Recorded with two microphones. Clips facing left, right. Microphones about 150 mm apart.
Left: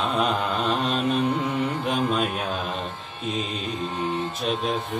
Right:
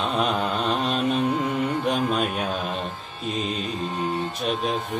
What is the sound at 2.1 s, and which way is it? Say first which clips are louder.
Mantra: right 1 dB; centre (ahead or behind).